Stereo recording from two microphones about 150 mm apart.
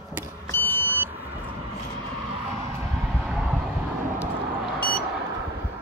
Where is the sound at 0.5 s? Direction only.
10° left (ahead or behind).